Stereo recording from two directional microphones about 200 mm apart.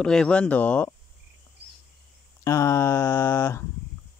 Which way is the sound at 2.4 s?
15° left (ahead or behind).